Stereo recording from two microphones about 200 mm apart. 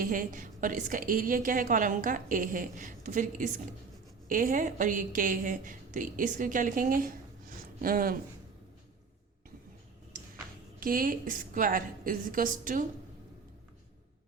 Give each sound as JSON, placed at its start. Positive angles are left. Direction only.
{"t": 0.0, "sound": "a woman's voice", "side_deg": -45}
{"t": 10.8, "sound": "a woman's voice", "side_deg": -45}